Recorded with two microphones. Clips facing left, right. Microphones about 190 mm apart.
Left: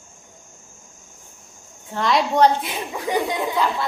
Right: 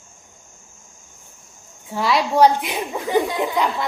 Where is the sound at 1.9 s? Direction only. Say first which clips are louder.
Right 1 dB; 5° right (ahead or behind).